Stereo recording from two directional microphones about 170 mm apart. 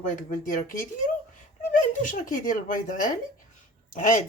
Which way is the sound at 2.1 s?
50° left (ahead or behind).